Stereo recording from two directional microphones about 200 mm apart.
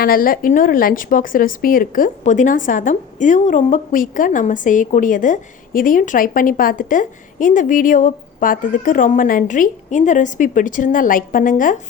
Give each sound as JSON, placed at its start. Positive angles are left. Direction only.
{"t": 0.0, "sound": "speech", "side_deg": 45}